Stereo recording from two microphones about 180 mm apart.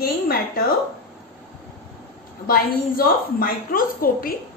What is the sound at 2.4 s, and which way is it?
A woman's voice, 55° left (ahead or behind).